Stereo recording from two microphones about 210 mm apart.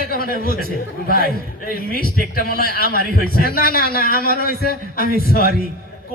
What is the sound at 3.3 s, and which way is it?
A man's voice, 45° left (ahead or behind).